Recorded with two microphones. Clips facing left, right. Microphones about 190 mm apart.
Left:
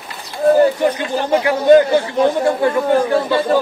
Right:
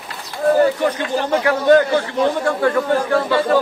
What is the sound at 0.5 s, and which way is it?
A man's voice, 20° left (ahead or behind).